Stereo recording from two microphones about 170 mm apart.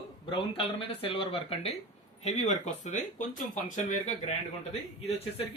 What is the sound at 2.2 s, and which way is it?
Speech, 45° left (ahead or behind).